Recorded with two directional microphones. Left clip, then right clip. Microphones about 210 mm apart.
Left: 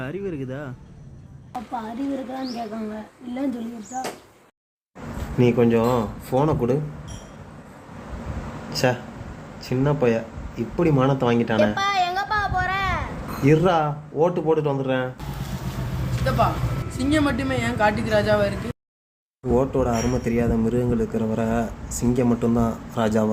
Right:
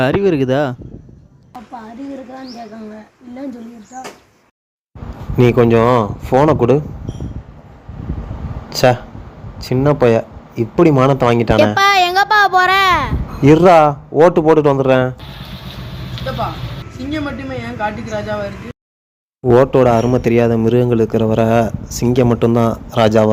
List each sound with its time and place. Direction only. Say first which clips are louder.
0.0 s speech: right 16 dB; 45° right (ahead or behind)
5.4 s a man's voice: right 8 dB; 35° right (ahead or behind)
9.6 s speech: right 9 dB; 35° right (ahead or behind)
17.0 s speech: left 1 dB; 5° left (ahead or behind)
19.5 s a man's voice: right 11 dB; 35° right (ahead or behind)